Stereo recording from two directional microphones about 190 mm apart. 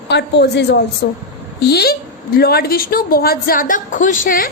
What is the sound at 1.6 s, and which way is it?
A woman's voice, 55° left (ahead or behind).